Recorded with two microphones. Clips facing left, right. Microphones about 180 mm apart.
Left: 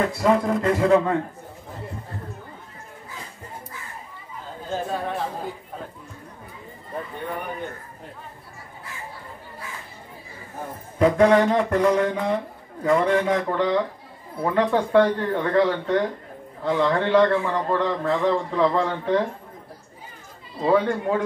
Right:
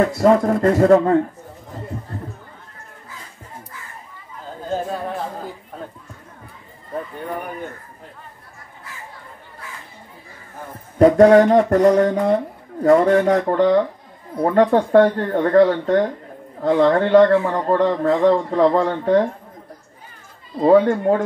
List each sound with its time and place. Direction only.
0.1 s a man's voice: 45° right (ahead or behind)
11.0 s a man's voice: 45° right (ahead or behind)
20.6 s a man's voice: 45° right (ahead or behind)